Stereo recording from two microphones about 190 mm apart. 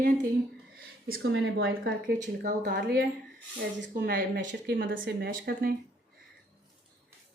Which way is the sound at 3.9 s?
50° right (ahead or behind).